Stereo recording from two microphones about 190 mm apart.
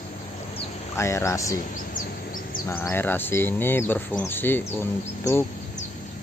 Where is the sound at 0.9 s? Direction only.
15° left (ahead or behind).